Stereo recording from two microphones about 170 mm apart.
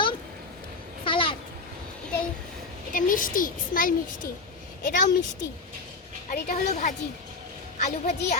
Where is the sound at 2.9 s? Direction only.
50° left (ahead or behind).